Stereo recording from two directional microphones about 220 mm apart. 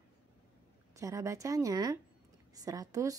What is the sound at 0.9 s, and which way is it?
A woman's voice, 15° right (ahead or behind).